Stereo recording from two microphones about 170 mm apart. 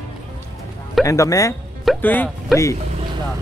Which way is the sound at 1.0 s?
20° left (ahead or behind).